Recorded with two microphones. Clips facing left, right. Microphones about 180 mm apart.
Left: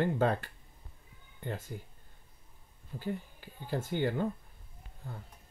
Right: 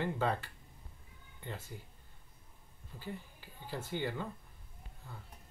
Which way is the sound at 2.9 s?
55° left (ahead or behind).